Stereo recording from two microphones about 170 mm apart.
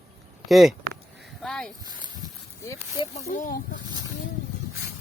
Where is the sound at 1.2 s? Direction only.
Centre (ahead or behind).